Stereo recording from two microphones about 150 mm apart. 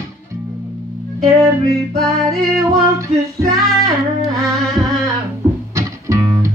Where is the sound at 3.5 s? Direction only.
Centre (ahead or behind).